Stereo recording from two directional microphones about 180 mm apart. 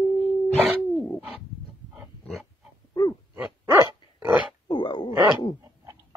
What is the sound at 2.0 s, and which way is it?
Pig, centre (ahead or behind).